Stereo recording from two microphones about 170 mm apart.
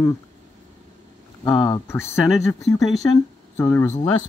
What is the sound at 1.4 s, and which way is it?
Speech, 25° left (ahead or behind).